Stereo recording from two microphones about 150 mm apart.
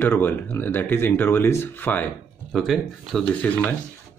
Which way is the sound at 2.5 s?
Centre (ahead or behind).